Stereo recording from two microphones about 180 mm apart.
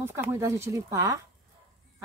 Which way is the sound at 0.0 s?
15° right (ahead or behind).